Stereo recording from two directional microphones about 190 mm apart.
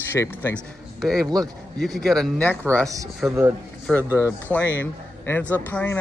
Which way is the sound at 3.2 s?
5° right (ahead or behind).